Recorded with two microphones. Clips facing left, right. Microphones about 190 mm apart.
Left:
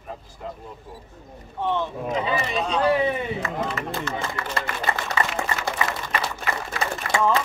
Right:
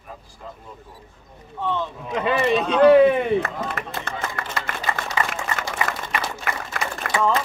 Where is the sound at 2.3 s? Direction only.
60° right (ahead or behind).